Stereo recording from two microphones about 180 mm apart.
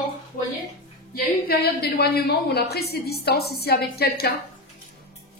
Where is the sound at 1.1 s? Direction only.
60° left (ahead or behind).